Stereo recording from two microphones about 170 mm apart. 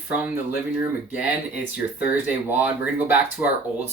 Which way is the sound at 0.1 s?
10° right (ahead or behind).